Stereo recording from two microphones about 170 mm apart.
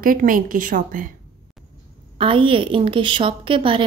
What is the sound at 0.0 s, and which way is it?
A woman's voice, 55° right (ahead or behind).